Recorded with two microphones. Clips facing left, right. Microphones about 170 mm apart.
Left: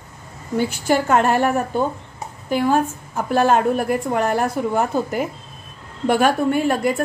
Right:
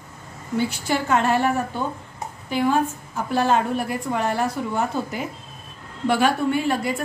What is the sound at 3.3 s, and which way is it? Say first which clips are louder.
A woman's voice: left 4 dB; 50° left (ahead or behind).